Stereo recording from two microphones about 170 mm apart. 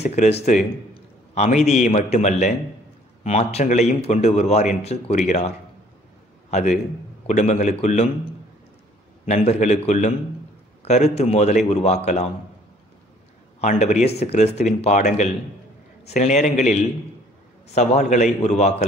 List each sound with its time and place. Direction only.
0.0 s a man's voice: 40° left (ahead or behind)
7.2 s a man's voice: 45° left (ahead or behind)
9.2 s a man's voice: 40° left (ahead or behind)
13.6 s a man's voice: 40° left (ahead or behind)
17.7 s a man's voice: 45° left (ahead or behind)